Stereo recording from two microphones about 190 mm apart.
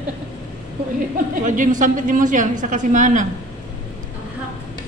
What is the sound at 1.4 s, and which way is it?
A woman's voice, 40° right (ahead or behind).